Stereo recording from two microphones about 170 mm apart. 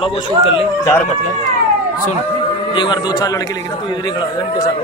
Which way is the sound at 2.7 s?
25° left (ahead or behind).